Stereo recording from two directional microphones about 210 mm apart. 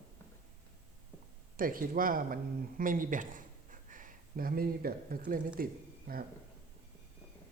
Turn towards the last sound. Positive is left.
turn(degrees=-45)  # may be behind; listen again after turning